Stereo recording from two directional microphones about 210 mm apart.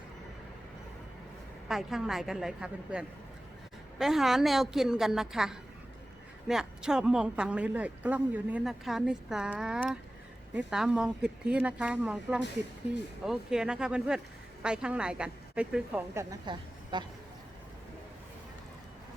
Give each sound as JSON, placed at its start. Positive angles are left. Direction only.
{"t": 1.6, "sound": "speech", "side_deg": 0}